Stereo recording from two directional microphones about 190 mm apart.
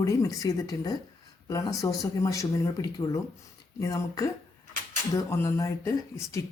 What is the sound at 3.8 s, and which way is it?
Speech, 15° left (ahead or behind).